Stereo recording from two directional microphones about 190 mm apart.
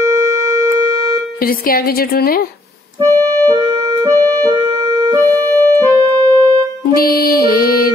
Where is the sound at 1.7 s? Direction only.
50° left (ahead or behind).